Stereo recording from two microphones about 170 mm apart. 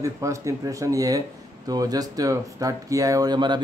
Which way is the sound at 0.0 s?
20° right (ahead or behind).